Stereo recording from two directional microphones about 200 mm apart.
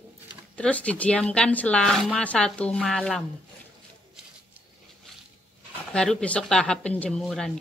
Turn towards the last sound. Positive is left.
turn(degrees=0)  # may be behind; listen again after turning